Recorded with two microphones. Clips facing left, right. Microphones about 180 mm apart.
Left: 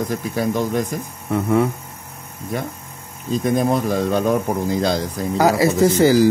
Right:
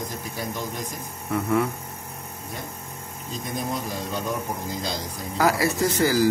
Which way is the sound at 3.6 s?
60° left (ahead or behind).